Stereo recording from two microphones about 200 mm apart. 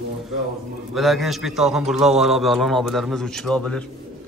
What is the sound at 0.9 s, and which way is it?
A man's voice, centre (ahead or behind).